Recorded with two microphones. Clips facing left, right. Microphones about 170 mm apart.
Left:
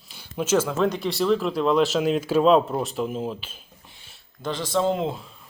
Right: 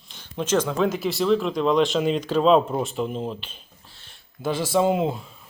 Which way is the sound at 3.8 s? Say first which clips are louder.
Left 1 dB; 15° left (ahead or behind).